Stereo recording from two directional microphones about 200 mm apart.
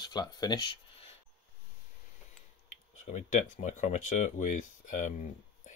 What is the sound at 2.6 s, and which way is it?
Speech, 40° left (ahead or behind).